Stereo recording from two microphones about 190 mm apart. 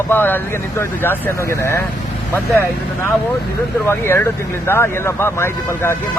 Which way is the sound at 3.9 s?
10° left (ahead or behind).